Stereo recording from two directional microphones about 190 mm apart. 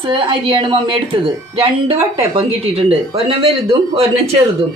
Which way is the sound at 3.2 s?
30° right (ahead or behind).